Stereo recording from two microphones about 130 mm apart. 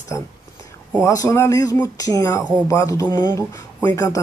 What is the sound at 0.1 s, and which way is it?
Speech, 25° left (ahead or behind).